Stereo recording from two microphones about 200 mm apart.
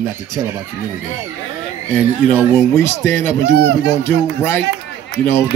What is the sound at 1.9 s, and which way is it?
Speech, 10° left (ahead or behind).